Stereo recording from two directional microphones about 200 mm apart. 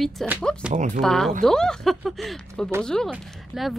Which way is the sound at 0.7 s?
40° right (ahead or behind).